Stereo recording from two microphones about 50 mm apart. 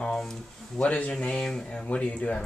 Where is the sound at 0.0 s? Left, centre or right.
Centre.